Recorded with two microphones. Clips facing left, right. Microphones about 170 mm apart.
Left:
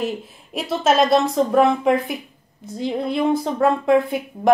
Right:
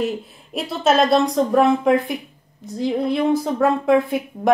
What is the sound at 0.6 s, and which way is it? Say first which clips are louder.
A woman's voice: even; centre (ahead or behind).